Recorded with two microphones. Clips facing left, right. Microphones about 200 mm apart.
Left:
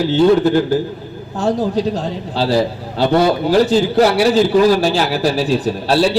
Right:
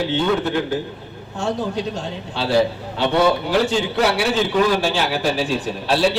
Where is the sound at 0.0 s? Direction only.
35° left (ahead or behind).